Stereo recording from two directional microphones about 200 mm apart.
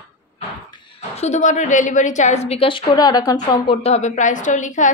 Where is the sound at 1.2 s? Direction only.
35° left (ahead or behind).